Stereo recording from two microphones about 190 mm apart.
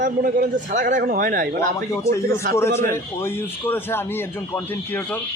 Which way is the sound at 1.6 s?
15° left (ahead or behind).